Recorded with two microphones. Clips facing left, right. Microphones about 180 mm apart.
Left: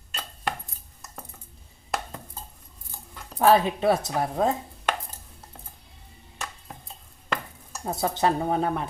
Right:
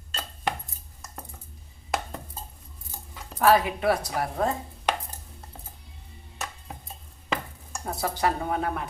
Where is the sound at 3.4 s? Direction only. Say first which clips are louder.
Left 2 dB; 25° left (ahead or behind).